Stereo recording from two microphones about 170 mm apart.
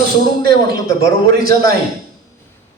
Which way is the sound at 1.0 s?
60° right (ahead or behind).